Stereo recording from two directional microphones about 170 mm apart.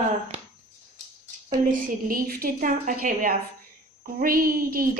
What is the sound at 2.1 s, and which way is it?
A woman's voice, 60° right (ahead or behind).